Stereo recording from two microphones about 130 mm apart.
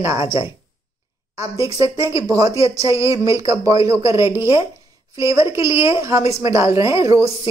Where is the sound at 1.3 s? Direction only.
25° right (ahead or behind).